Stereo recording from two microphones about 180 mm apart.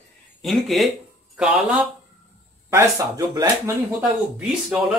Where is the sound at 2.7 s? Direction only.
20° right (ahead or behind).